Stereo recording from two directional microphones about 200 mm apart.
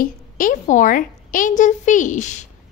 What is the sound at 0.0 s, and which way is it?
A woman's voice, 40° left (ahead or behind).